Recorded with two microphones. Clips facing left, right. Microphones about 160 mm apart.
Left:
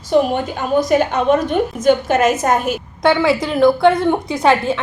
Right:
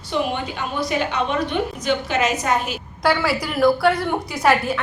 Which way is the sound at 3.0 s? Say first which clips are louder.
Left 5 dB; 20° left (ahead or behind).